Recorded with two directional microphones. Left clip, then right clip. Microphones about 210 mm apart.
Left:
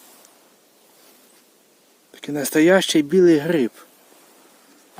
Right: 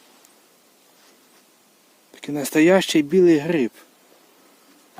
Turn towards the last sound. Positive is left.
turn(degrees=10)  # may be behind; listen again after turning